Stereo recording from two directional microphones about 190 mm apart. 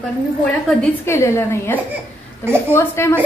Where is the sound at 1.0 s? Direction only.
15° left (ahead or behind).